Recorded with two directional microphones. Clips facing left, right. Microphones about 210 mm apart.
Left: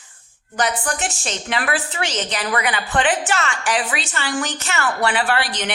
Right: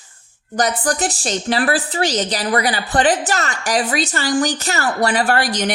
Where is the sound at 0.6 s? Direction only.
40° right (ahead or behind).